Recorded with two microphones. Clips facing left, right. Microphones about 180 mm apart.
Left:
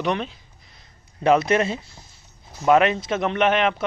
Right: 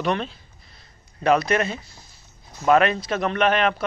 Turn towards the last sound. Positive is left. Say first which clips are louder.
# left 1 dB
turn(degrees=20)  # may be behind; listen again after turning